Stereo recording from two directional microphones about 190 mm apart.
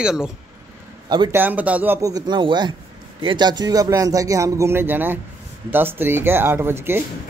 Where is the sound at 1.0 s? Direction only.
20° right (ahead or behind).